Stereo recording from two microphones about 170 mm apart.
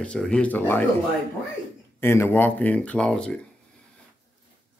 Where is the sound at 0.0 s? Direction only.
5° left (ahead or behind).